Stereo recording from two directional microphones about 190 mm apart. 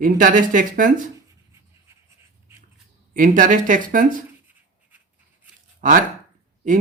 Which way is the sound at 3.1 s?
45° right (ahead or behind).